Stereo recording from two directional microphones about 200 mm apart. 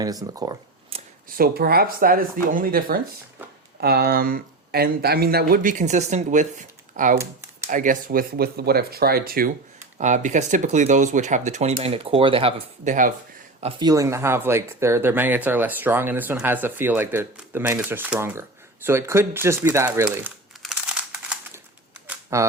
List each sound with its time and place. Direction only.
0.0 s speech: 20° right (ahead or behind)
1.4 s speech: 50° right (ahead or behind)
10.0 s speech: 35° right (ahead or behind)
13.6 s speech: 25° right (ahead or behind)
20.6 s crumpling: 5° right (ahead or behind)
22.1 s duck: 15° right (ahead or behind)